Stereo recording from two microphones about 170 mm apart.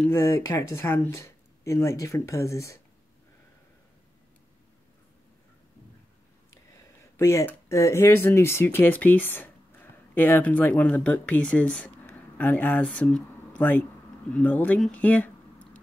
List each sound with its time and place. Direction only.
0.0 s speech: 15° left (ahead or behind)
7.2 s speech: 15° left (ahead or behind)